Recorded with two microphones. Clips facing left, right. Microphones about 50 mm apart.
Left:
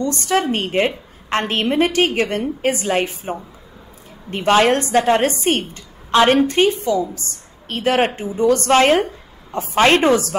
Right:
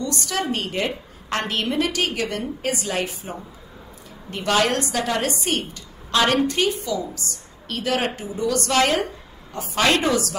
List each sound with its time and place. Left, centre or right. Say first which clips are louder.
0.0 s a woman's voice: left 7 dB; left